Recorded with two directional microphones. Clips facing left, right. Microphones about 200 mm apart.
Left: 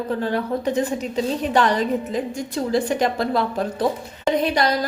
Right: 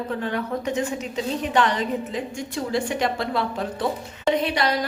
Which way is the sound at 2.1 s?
40° left (ahead or behind).